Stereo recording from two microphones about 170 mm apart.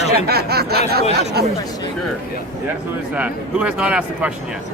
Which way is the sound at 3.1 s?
10° right (ahead or behind).